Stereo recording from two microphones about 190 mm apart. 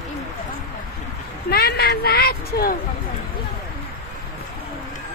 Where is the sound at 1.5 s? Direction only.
55° left (ahead or behind).